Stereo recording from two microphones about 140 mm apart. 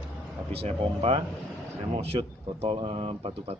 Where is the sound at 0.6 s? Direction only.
50° right (ahead or behind).